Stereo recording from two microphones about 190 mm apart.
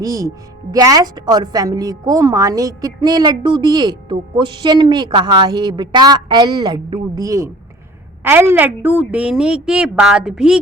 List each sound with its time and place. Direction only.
0.0 s a woman's voice: 15° right (ahead or behind)